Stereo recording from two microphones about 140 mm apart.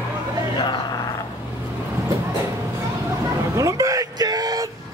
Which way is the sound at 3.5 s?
25° right (ahead or behind).